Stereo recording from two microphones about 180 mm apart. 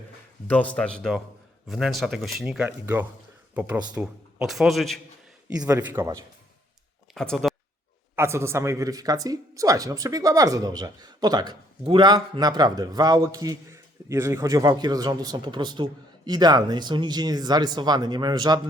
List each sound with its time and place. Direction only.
0.4 s a man's voice: 10° left (ahead or behind)
5.5 s a man's voice: 15° right (ahead or behind)
7.1 s speech: centre (ahead or behind)
8.1 s a man's voice: 15° right (ahead or behind)